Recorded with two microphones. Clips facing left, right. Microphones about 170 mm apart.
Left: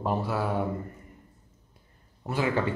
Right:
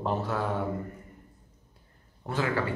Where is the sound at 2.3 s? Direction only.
15° left (ahead or behind).